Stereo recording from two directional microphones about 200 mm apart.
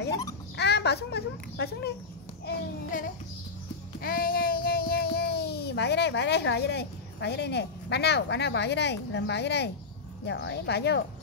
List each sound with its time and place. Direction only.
0.6 s a child's voice: 55° left (ahead or behind)
2.4 s a child's voice: 40° left (ahead or behind)
4.0 s child singing: 45° left (ahead or behind)
10.2 s speech: 65° left (ahead or behind)